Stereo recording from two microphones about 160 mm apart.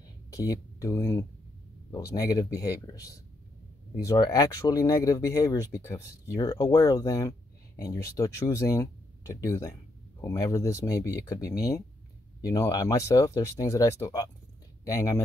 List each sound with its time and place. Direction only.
0.3 s speech: 20° left (ahead or behind)
12.5 s speech: 20° left (ahead or behind)